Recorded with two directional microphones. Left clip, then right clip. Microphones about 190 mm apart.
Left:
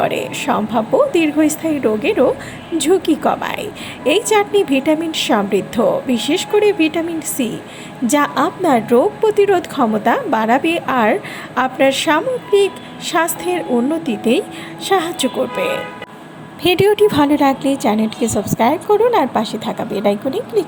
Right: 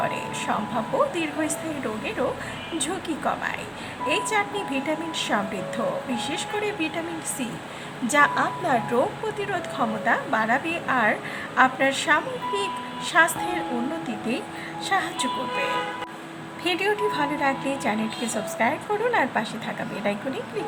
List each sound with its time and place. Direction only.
0.0 s a woman's voice: 30° left (ahead or behind)
16.6 s a woman's voice: 35° left (ahead or behind)